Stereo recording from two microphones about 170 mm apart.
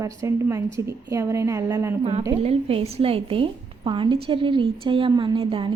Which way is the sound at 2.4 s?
35° right (ahead or behind).